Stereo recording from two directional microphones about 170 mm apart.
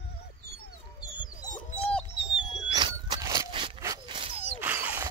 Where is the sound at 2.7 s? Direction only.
25° right (ahead or behind).